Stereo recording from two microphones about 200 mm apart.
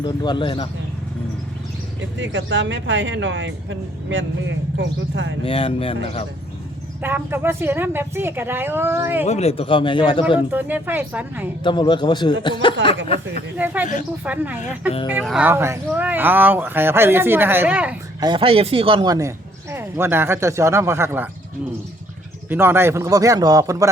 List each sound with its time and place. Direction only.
0.0 s speech: 20° left (ahead or behind)
2.0 s speech: 65° right (ahead or behind)
5.5 s speech: 25° left (ahead or behind)
7.0 s speech: 10° right (ahead or behind)
9.2 s speech: 30° left (ahead or behind)
10.5 s speech: 10° right (ahead or behind)
11.6 s speech: 25° left (ahead or behind)
12.8 s speech: 70° right (ahead or behind)
13.6 s speech: 10° right (ahead or behind)
18.2 s speech: 25° right (ahead or behind)
22.4 s speech: 10° right (ahead or behind)